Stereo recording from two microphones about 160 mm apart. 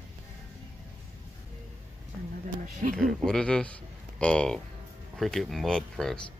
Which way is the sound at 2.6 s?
60° right (ahead or behind).